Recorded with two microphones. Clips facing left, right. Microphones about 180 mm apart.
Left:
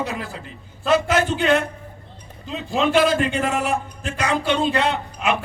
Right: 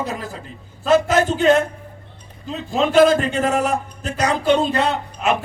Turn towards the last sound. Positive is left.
turn(degrees=-40)  # may be behind; listen again after turning